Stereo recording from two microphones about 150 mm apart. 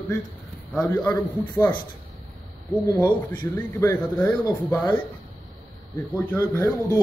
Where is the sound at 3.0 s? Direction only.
10° left (ahead or behind).